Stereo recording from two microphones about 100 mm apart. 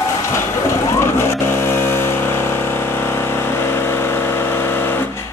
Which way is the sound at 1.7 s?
25° left (ahead or behind).